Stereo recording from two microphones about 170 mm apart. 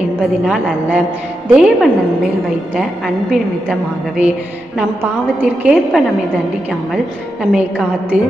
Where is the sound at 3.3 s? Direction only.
5° right (ahead or behind).